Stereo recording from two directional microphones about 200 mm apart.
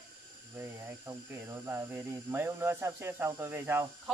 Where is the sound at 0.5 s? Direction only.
15° right (ahead or behind).